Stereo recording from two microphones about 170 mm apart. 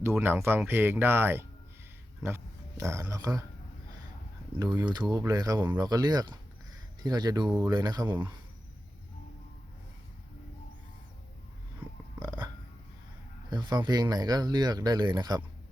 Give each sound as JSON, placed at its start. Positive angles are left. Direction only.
{"t": 0.0, "sound": "a man's voice", "side_deg": -15}
{"t": 4.8, "sound": "speech", "side_deg": -25}
{"t": 13.5, "sound": "speech", "side_deg": -25}